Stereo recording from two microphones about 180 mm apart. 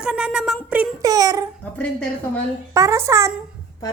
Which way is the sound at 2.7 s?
15° right (ahead or behind).